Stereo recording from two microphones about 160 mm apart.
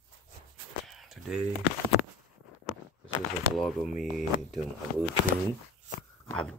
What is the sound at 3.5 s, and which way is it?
Speech, centre (ahead or behind).